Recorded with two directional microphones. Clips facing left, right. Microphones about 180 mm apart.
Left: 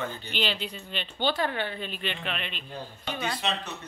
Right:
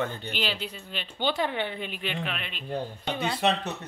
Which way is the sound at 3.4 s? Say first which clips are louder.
Right 7 dB; 60° right (ahead or behind).